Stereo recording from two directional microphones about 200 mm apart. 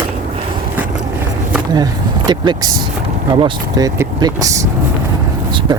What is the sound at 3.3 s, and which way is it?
Speech, 20° right (ahead or behind).